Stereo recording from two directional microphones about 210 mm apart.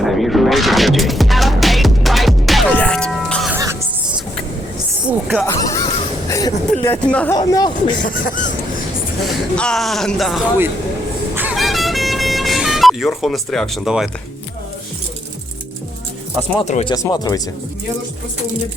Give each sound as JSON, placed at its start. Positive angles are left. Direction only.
{"t": 0.0, "sound": "music", "side_deg": 0}
{"t": 3.5, "sound": "music", "side_deg": -15}
{"t": 5.0, "sound": "a sound", "side_deg": -5}
{"t": 5.5, "sound": "a sound", "side_deg": 15}
{"t": 7.3, "sound": "speech", "side_deg": 20}
{"t": 8.0, "sound": "speech", "side_deg": 40}
{"t": 9.2, "sound": "speech", "side_deg": 5}
{"t": 11.3, "sound": "vehicle", "side_deg": -5}
{"t": 16.6, "sound": "speech", "side_deg": 30}
{"t": 16.9, "sound": "speech", "side_deg": 15}